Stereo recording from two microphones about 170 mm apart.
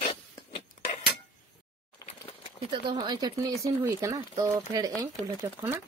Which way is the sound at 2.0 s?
20° left (ahead or behind).